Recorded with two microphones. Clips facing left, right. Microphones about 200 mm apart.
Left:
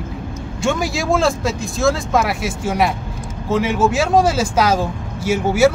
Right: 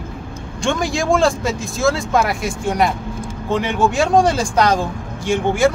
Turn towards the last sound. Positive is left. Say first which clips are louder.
# left 1 dB
turn(degrees=5)  # may be behind; listen again after turning